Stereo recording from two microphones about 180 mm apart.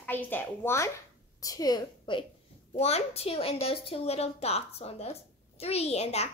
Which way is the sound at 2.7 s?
35° left (ahead or behind).